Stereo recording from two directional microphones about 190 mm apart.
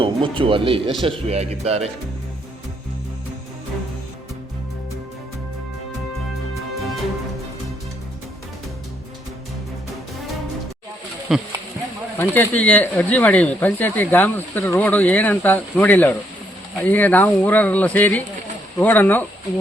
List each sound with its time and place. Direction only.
0.0 s speech: 25° right (ahead or behind)
11.3 s speech: centre (ahead or behind)
12.1 s speech: 10° left (ahead or behind)